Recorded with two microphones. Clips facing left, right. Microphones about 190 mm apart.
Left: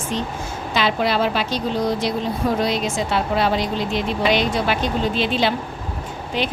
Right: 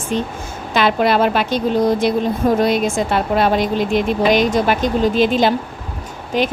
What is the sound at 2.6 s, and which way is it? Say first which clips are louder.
Speech: right 5 dB; 50° right (ahead or behind).